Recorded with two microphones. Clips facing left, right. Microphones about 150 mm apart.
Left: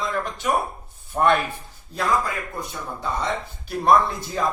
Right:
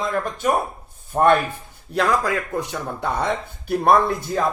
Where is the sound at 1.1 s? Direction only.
45° right (ahead or behind).